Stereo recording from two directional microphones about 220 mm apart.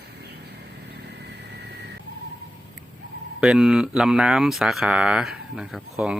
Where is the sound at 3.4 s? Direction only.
5° right (ahead or behind).